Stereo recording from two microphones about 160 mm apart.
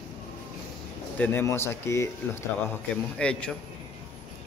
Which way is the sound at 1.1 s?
10° left (ahead or behind).